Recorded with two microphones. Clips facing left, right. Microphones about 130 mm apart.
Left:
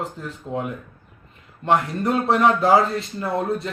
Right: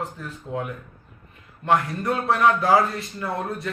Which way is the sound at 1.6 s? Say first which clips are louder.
Left 2 dB; 20° left (ahead or behind).